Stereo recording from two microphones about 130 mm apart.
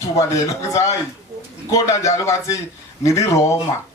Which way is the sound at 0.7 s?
25° left (ahead or behind).